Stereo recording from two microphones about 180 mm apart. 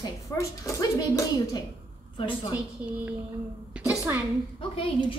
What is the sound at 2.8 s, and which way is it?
Speech, 10° right (ahead or behind).